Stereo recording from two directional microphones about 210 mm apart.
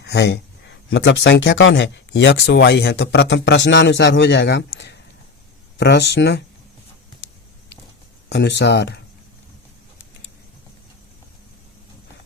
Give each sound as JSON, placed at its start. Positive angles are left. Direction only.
{"t": 0.0, "sound": "speech", "side_deg": 55}
{"t": 8.3, "sound": "speech", "side_deg": 55}